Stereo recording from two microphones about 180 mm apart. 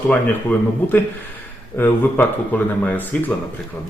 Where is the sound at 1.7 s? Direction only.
10° left (ahead or behind).